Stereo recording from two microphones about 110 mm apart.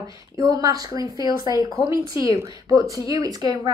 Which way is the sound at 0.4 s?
30° right (ahead or behind).